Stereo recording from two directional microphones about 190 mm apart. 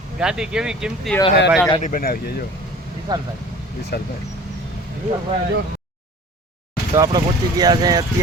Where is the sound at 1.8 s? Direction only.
50° left (ahead or behind).